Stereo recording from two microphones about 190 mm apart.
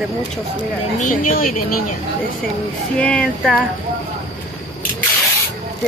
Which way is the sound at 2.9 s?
5° left (ahead or behind).